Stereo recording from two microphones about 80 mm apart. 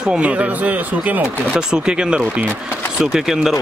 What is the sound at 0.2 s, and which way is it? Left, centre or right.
Speech, centre.